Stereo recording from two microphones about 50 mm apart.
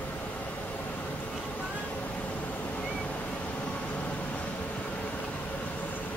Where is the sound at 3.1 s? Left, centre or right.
Left.